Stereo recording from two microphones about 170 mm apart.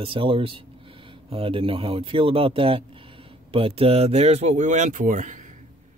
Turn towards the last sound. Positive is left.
turn(degrees=-45)  # may be behind; listen again after turning